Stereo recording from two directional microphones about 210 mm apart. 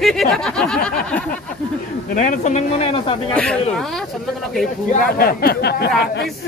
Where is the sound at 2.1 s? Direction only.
40° left (ahead or behind).